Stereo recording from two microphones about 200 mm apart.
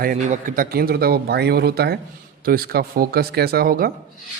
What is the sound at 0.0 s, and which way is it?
A man's voice, 40° right (ahead or behind).